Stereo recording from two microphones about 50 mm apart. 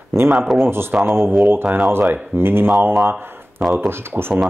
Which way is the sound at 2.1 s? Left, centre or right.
Right.